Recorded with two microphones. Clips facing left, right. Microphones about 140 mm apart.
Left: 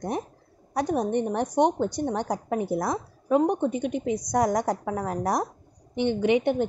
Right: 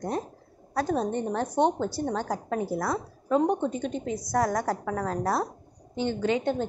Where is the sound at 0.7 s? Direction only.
15° left (ahead or behind).